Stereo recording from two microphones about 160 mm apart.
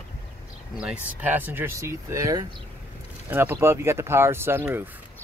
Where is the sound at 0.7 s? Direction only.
10° right (ahead or behind).